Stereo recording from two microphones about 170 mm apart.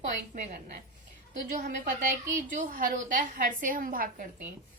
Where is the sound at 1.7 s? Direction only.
50° right (ahead or behind).